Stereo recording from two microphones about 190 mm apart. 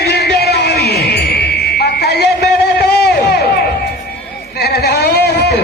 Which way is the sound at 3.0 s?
60° left (ahead or behind).